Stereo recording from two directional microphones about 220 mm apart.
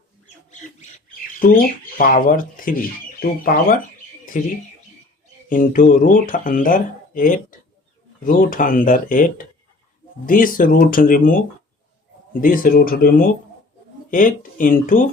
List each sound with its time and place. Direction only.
0.5 s squawk: 35° left (ahead or behind)
2.0 s speech: 40° left (ahead or behind)